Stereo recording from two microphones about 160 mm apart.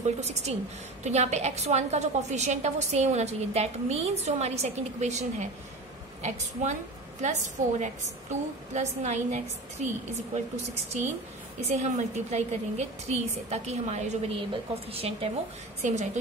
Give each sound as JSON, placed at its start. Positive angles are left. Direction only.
{"t": 0.2, "sound": "a woman's voice", "side_deg": -45}